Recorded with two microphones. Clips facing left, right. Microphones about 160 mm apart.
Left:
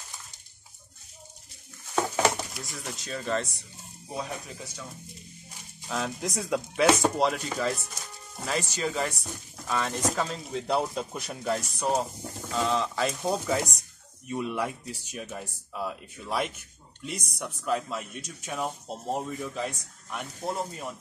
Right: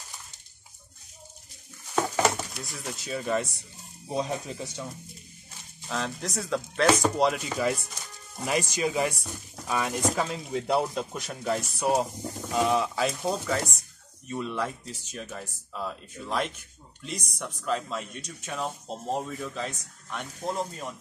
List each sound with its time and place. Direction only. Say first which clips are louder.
2.0 s a sound: even; centre (ahead or behind)
4.1 s speech: right 5 dB; 25° right (ahead or behind)
5.9 s speech: left 1 dB; 5° left (ahead or behind)
7.0 s chopping: right 1 dB; centre (ahead or behind)
9.3 s speech: right 1 dB; 10° right (ahead or behind)
12.4 s chopping: right 2 dB; 15° right (ahead or behind)
13.3 s speech: left 1 dB; 15° left (ahead or behind)